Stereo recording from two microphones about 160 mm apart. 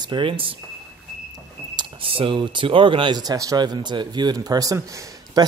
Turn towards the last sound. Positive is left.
turn(degrees=-20)  # may be behind; listen again after turning